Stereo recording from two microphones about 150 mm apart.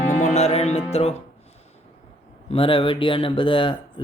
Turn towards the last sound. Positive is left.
turn(degrees=35)  # may be behind; listen again after turning